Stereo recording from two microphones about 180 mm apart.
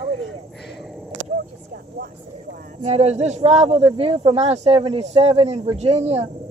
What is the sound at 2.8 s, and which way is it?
Speech, 35° right (ahead or behind).